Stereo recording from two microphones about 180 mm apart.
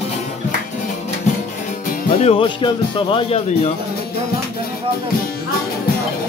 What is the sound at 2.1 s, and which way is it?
Speech, 35° left (ahead or behind).